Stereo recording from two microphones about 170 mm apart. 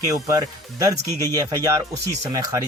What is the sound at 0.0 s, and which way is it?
Speech, 20° right (ahead or behind).